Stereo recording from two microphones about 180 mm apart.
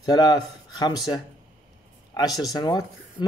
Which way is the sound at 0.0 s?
20° left (ahead or behind).